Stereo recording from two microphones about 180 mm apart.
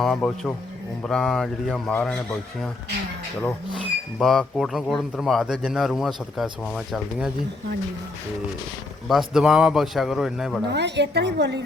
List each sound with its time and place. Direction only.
0.0 s speech: centre (ahead or behind)
4.2 s speech: centre (ahead or behind)
9.0 s speech: centre (ahead or behind)
10.7 s a woman's voice: 70° right (ahead or behind)